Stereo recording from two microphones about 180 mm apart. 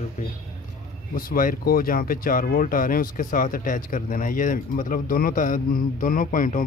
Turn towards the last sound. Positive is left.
turn(degrees=50)  # may be behind; listen again after turning